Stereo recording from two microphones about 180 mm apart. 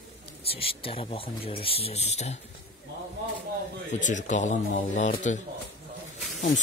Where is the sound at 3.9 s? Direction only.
45° left (ahead or behind).